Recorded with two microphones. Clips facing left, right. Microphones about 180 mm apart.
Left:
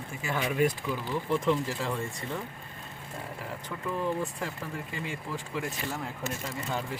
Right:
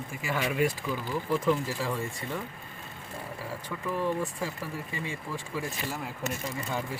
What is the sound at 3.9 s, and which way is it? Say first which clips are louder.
Speech: right 1 dB; 5° right (ahead or behind).